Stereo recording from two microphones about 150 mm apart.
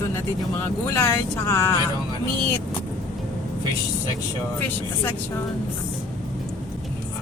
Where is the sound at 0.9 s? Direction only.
15° left (ahead or behind).